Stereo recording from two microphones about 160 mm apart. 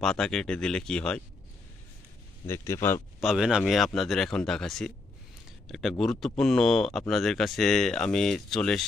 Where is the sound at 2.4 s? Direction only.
15° left (ahead or behind).